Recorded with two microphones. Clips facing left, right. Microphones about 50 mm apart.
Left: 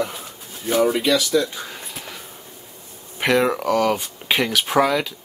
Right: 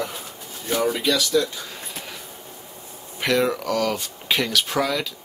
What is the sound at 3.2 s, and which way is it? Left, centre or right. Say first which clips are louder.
Speech: left 3 dB; left.